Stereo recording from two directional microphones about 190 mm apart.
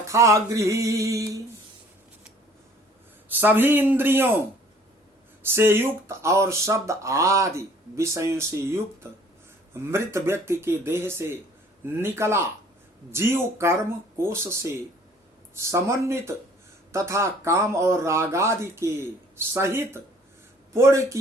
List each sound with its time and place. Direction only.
0.1 s speech: 15° right (ahead or behind)
3.2 s speech: 10° right (ahead or behind)
5.4 s speech: 10° right (ahead or behind)